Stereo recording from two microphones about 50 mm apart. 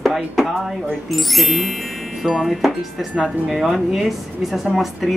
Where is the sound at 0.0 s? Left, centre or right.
Centre.